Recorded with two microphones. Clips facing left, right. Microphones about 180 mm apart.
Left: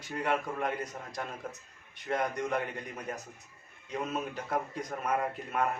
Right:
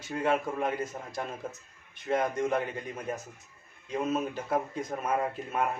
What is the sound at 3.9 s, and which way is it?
A man's voice, 25° right (ahead or behind).